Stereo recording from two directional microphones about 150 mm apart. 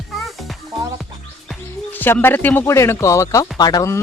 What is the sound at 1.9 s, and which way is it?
Speech, 10° left (ahead or behind).